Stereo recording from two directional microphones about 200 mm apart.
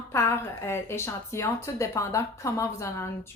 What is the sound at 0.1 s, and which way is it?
A woman's voice, 15° left (ahead or behind).